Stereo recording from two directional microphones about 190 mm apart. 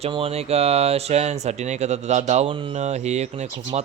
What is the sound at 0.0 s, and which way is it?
Speech, 30° right (ahead or behind).